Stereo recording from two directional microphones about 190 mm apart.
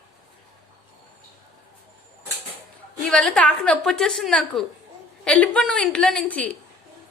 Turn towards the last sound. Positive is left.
turn(degrees=5)  # may be behind; listen again after turning